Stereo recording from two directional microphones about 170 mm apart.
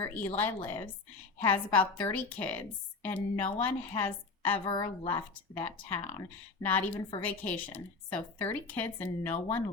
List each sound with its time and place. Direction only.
0.0 s a woman's voice: 10° left (ahead or behind)
4.6 s a woman's voice: 30° left (ahead or behind)
5.3 s a woman's voice: 10° left (ahead or behind)